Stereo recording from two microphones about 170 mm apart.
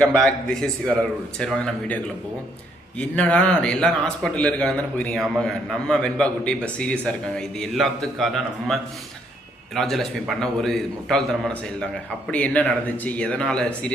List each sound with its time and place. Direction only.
0.0 s a man's voice: 5° left (ahead or behind)
3.0 s a man's voice: 5° left (ahead or behind)